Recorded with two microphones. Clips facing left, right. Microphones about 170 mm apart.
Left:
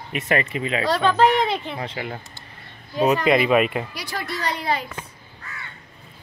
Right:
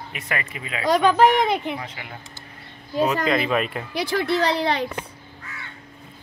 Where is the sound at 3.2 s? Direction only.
10° left (ahead or behind).